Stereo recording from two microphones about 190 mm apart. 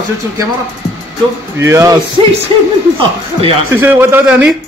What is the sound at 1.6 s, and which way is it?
Speech, 15° right (ahead or behind).